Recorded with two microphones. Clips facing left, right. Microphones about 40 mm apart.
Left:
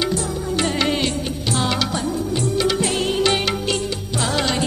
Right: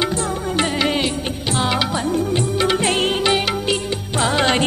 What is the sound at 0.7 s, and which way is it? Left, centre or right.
Music, centre.